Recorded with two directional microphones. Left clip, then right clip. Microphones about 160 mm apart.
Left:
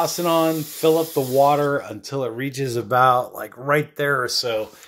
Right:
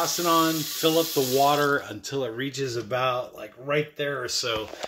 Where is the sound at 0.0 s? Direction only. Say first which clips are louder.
Left 3 dB; 10° left (ahead or behind).